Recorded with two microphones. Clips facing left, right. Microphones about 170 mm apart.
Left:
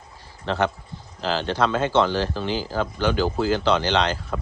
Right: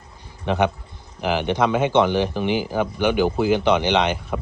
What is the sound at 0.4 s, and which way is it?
Speech, 15° right (ahead or behind).